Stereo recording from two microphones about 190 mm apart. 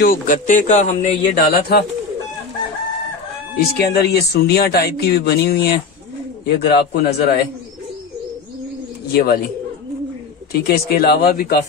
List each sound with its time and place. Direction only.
0.0 s speech: 45° left (ahead or behind)
3.5 s speech: 60° left (ahead or behind)
9.1 s speech: 55° left (ahead or behind)
10.5 s speech: 55° left (ahead or behind)